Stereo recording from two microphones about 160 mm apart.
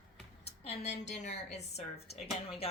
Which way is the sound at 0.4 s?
40° left (ahead or behind).